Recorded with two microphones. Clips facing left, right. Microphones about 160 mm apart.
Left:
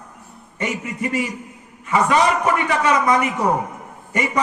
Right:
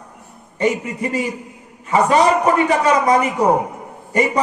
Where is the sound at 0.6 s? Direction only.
35° right (ahead or behind).